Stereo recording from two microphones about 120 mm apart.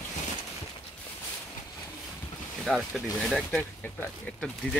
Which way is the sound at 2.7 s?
5° right (ahead or behind).